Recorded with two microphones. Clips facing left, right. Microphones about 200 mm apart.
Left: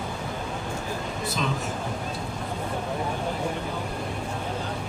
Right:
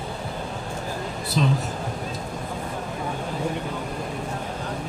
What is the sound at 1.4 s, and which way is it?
Speech, 35° right (ahead or behind).